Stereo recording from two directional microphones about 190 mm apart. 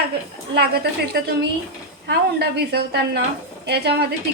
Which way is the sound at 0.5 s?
60° right (ahead or behind).